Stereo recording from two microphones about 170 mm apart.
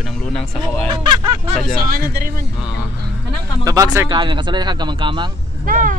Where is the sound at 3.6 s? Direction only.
20° right (ahead or behind).